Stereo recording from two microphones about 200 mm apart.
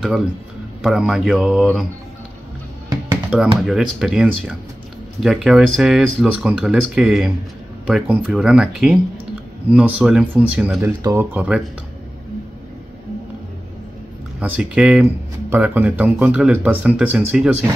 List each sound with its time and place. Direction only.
0.8 s speech: 5° right (ahead or behind)
3.3 s speech: 5° right (ahead or behind)
11.0 s speech: 15° right (ahead or behind)
11.3 s speech: 5° right (ahead or behind)
14.4 s speech: 5° right (ahead or behind)